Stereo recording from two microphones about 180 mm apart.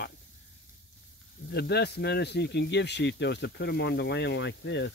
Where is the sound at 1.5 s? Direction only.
65° left (ahead or behind).